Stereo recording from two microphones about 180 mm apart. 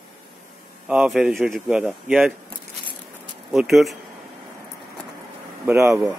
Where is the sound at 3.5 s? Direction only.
Centre (ahead or behind).